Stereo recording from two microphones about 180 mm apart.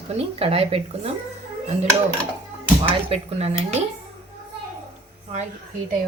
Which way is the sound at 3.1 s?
35° right (ahead or behind).